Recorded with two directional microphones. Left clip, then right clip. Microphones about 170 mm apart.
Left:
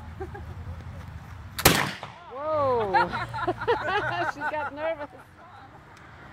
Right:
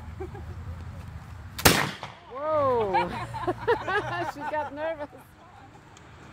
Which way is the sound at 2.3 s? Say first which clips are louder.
Even; 60° right (ahead or behind).